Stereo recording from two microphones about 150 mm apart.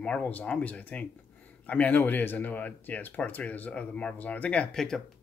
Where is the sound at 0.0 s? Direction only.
10° left (ahead or behind).